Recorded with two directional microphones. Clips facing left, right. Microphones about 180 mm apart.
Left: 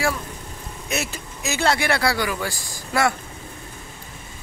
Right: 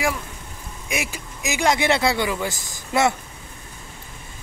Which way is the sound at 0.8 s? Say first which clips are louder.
Left 1 dB; 10° right (ahead or behind).